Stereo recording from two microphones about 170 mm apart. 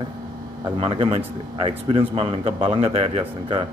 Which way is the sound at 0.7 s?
30° right (ahead or behind).